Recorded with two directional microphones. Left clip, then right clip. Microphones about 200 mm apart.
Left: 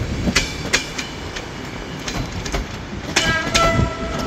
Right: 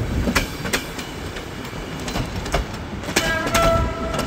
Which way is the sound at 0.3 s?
50° right (ahead or behind).